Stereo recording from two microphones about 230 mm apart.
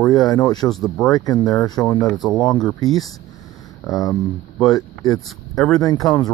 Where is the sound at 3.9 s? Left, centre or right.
Centre.